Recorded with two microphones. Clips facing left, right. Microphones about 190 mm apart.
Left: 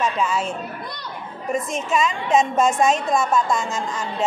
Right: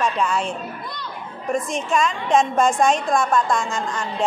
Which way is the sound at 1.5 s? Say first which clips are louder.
Right 1 dB; 5° left (ahead or behind).